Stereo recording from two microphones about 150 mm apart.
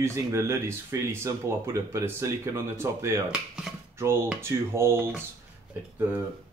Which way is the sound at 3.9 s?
15° right (ahead or behind).